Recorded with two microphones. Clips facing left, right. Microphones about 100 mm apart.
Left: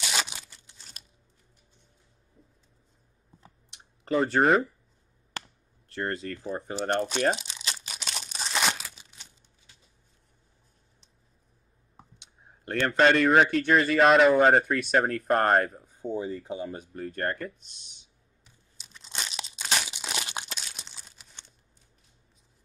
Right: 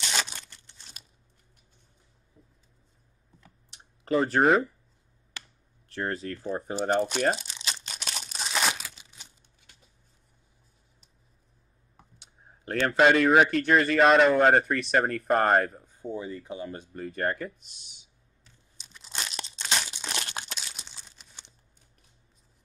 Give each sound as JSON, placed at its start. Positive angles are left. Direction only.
{"t": 0.0, "sound": "tearing", "side_deg": 5}
{"t": 4.0, "sound": "speech", "side_deg": 0}
{"t": 5.9, "sound": "speech", "side_deg": 0}
{"t": 6.9, "sound": "crumpling", "side_deg": -5}
{"t": 12.2, "sound": "speech", "side_deg": 0}
{"t": 16.1, "sound": "speech", "side_deg": 30}
{"t": 16.6, "sound": "speech", "side_deg": 10}
{"t": 17.0, "sound": "speech", "side_deg": -5}
{"t": 18.4, "sound": "crumpling", "side_deg": 5}